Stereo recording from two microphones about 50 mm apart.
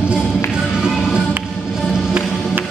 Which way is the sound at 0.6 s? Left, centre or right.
Centre.